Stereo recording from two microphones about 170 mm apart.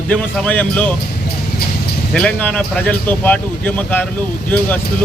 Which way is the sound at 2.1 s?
5° left (ahead or behind).